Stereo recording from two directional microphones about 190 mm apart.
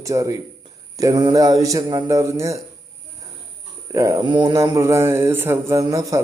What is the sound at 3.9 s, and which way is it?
Speech, 15° right (ahead or behind).